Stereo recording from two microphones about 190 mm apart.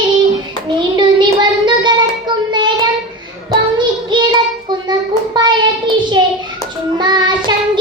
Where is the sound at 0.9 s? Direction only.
25° right (ahead or behind).